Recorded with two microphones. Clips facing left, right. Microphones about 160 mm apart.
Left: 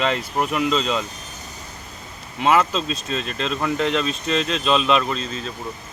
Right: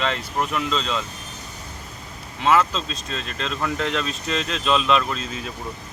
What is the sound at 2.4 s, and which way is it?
Speech, 10° left (ahead or behind).